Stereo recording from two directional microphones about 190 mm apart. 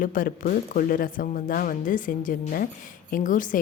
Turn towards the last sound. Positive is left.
turn(degrees=45)  # may be behind; listen again after turning